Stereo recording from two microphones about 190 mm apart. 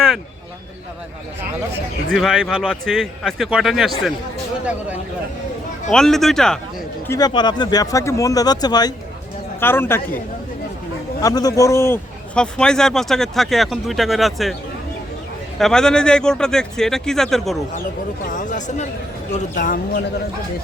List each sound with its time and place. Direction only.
2.1 s a man's voice: centre (ahead or behind)
5.9 s a man's voice: centre (ahead or behind)
7.1 s speech: 20° left (ahead or behind)
11.2 s a man's voice: 20° left (ahead or behind); by 14.5 s centre (ahead or behind)
15.5 s a man's voice: centre (ahead or behind)
18.3 s speech: 40° left (ahead or behind)